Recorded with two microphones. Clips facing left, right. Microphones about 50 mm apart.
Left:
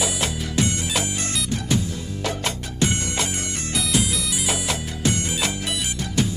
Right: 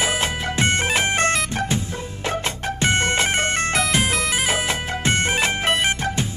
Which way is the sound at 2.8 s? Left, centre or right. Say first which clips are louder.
Right 6 dB; right.